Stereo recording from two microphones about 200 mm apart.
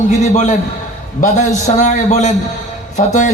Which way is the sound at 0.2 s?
35° left (ahead or behind).